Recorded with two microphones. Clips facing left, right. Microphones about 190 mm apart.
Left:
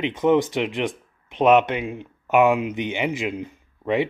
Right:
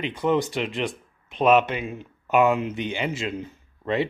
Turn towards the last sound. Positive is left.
turn(degrees=15)  # may be behind; listen again after turning